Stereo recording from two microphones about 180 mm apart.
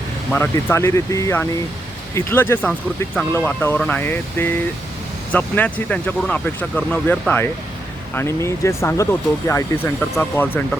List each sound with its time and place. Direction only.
0.3 s speech: 10° left (ahead or behind)